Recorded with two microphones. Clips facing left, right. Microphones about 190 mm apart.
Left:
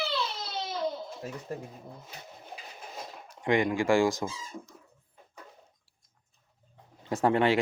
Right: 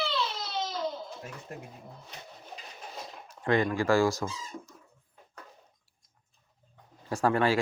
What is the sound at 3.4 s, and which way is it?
Speech, 15° left (ahead or behind).